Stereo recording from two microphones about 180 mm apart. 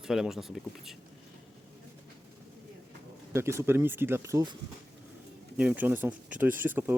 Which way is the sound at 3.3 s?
15° right (ahead or behind).